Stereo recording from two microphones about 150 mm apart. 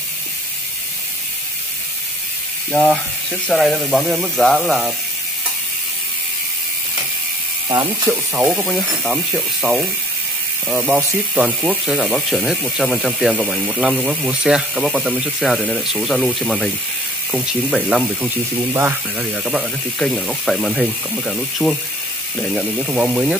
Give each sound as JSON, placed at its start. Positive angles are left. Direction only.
{"t": 2.7, "sound": "speech", "side_deg": 0}
{"t": 8.0, "sound": "speech", "side_deg": -15}
{"t": 8.6, "sound": "speech", "side_deg": 0}
{"t": 18.6, "sound": "speech", "side_deg": -15}
{"t": 20.0, "sound": "speech", "side_deg": 0}